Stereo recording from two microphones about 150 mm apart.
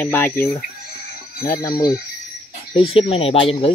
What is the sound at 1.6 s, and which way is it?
Speech, 25° left (ahead or behind).